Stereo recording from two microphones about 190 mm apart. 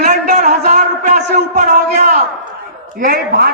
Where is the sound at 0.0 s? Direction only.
40° right (ahead or behind).